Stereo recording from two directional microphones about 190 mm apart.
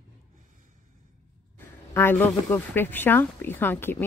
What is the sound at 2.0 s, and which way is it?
Speech, 10° left (ahead or behind).